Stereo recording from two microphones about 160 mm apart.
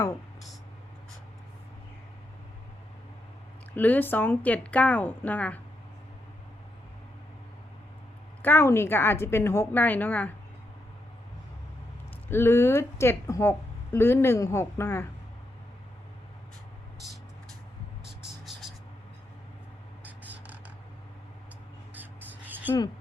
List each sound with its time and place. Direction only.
3.8 s speech: 10° left (ahead or behind)
8.4 s speech: 15° left (ahead or behind)
12.3 s speech: 15° left (ahead or behind)
18.2 s vehicle: centre (ahead or behind)
20.1 s a sound: 10° right (ahead or behind)
21.9 s a sound: 10° right (ahead or behind)